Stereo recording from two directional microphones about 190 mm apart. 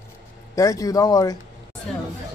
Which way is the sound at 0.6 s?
15° left (ahead or behind).